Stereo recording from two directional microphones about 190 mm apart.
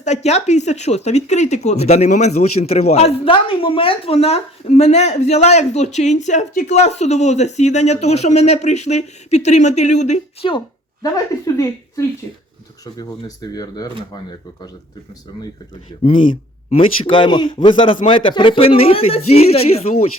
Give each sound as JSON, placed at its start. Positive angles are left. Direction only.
{"t": 0.0, "sound": "speech", "side_deg": 35}
{"t": 11.0, "sound": "speech", "side_deg": 20}
{"t": 16.0, "sound": "speech", "side_deg": 25}